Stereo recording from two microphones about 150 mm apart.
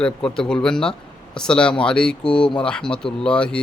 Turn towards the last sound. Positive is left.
turn(degrees=5)  # may be behind; listen again after turning